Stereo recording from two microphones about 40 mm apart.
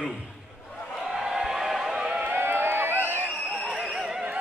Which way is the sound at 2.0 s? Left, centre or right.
Right.